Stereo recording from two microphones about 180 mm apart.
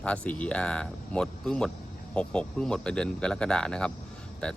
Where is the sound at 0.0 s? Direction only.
5° left (ahead or behind).